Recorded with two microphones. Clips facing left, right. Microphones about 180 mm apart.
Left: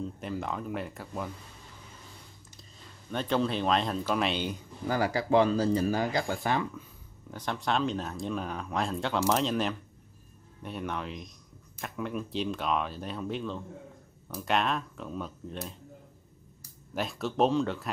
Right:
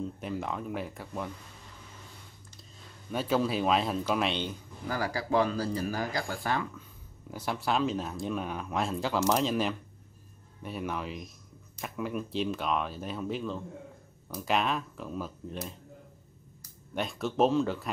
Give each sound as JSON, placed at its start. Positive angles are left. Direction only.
{"t": 0.0, "sound": "speech", "side_deg": 0}
{"t": 3.1, "sound": "speech", "side_deg": -5}
{"t": 4.8, "sound": "speech", "side_deg": 25}
{"t": 7.2, "sound": "speech", "side_deg": -5}
{"t": 16.9, "sound": "speech", "side_deg": 0}